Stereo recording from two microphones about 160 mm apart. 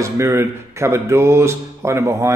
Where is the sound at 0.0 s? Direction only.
15° right (ahead or behind).